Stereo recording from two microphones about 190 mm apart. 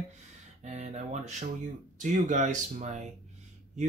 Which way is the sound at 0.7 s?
35° right (ahead or behind).